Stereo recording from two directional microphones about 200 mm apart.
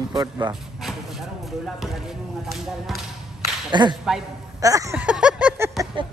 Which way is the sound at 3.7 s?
20° right (ahead or behind).